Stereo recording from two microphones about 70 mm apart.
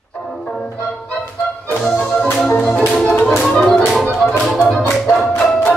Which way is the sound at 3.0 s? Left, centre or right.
Centre.